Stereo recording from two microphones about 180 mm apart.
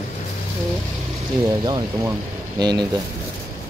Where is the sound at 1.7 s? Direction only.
25° right (ahead or behind).